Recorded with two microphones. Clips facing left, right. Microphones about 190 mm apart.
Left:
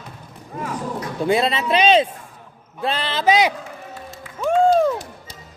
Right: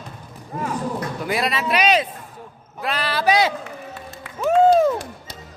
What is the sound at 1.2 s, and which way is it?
Speech, 25° left (ahead or behind).